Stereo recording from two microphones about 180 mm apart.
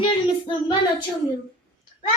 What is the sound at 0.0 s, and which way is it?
Child singing, 30° left (ahead or behind).